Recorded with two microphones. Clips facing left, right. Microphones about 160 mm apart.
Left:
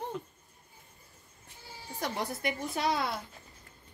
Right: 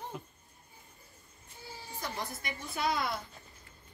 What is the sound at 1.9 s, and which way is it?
Speech, 70° left (ahead or behind).